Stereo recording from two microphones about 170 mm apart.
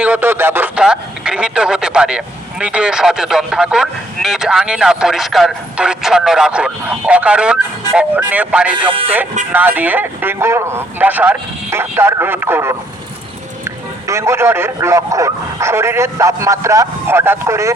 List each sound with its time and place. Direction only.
0.0 s speech: 10° right (ahead or behind)
14.1 s speech: 15° right (ahead or behind)